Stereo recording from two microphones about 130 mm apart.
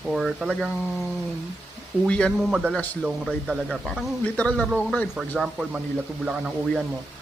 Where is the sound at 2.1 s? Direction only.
10° left (ahead or behind).